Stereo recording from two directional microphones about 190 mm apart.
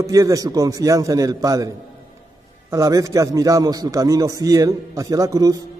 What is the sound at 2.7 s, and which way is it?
A man's voice, 15° right (ahead or behind).